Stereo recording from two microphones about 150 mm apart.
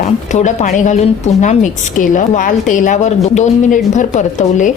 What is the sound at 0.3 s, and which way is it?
A woman's voice, 55° left (ahead or behind).